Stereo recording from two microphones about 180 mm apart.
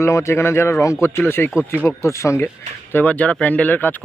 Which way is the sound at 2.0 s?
15° left (ahead or behind).